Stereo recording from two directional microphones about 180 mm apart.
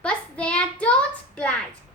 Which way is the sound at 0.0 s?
5° left (ahead or behind).